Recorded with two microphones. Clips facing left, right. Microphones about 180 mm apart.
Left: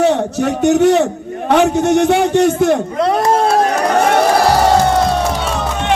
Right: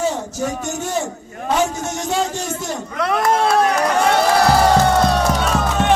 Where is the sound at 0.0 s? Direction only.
65° left (ahead or behind).